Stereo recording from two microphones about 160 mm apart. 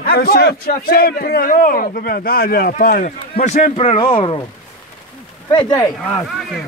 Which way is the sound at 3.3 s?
45° left (ahead or behind).